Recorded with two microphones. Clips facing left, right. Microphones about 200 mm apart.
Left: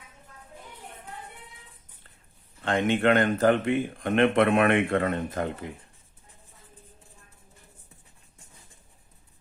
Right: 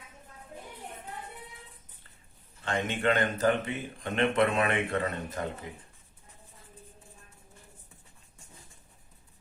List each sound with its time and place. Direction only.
2.6 s speech: 55° left (ahead or behind)